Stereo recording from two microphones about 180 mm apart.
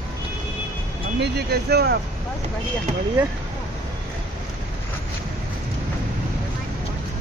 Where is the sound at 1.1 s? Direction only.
65° right (ahead or behind).